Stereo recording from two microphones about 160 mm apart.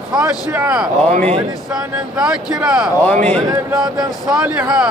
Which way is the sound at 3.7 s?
5° right (ahead or behind).